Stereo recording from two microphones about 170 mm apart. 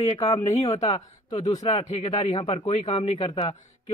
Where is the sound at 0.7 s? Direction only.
40° left (ahead or behind).